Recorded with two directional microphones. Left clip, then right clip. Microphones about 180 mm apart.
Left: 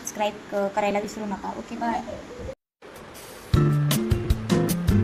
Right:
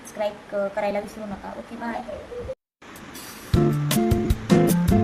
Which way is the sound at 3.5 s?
Centre (ahead or behind).